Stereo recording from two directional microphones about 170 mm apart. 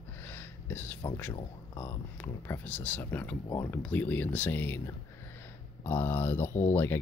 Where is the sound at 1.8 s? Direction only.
10° left (ahead or behind).